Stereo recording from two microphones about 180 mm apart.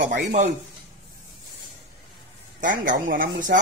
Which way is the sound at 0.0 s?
45° right (ahead or behind).